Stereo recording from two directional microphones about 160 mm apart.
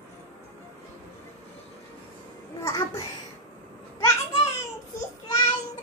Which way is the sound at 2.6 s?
20° left (ahead or behind).